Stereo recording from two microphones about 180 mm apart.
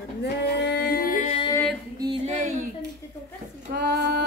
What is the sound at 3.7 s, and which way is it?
Female singing, 65° right (ahead or behind).